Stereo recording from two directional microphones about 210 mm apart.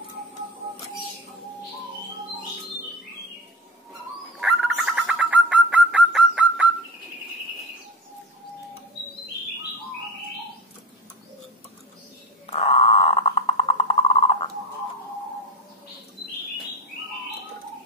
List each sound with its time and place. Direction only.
4.4 s bird: centre (ahead or behind)
12.4 s frog: 30° left (ahead or behind)